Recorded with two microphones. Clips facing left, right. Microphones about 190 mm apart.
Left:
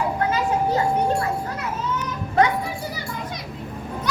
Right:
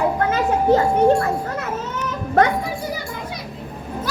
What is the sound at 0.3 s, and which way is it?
Children playing, 55° right (ahead or behind).